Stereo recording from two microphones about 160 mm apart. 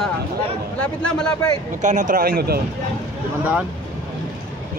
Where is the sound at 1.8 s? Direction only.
55° right (ahead or behind); by 2.6 s 75° right (ahead or behind).